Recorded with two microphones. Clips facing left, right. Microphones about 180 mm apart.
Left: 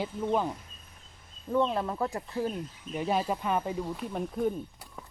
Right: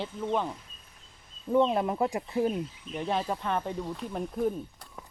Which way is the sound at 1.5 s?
15° right (ahead or behind).